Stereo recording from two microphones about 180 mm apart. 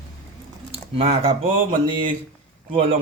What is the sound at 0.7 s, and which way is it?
Speech, 30° right (ahead or behind).